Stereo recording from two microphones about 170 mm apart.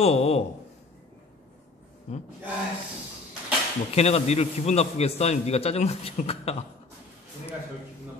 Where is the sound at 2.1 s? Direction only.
40° left (ahead or behind).